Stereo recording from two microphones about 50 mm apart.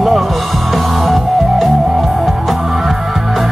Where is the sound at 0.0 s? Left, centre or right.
Centre.